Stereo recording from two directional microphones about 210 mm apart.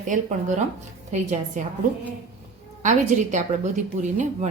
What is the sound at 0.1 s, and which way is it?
Speech, 35° right (ahead or behind).